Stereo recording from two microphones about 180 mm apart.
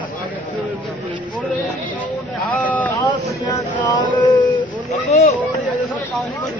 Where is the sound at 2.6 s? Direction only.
10° left (ahead or behind).